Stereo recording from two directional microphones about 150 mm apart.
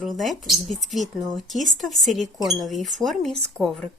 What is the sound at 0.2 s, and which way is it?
Speech, centre (ahead or behind).